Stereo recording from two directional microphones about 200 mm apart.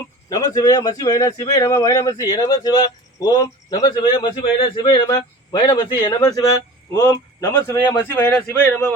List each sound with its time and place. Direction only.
0.3 s speech: 15° left (ahead or behind)